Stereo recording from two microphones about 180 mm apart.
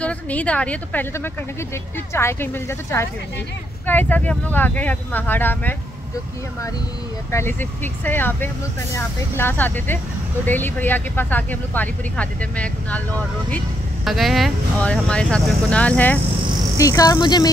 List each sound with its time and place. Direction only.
0.0 s speech: 5° left (ahead or behind)
7.2 s speech: 15° left (ahead or behind)
14.0 s speech: centre (ahead or behind); by 17.5 s 25° left (ahead or behind)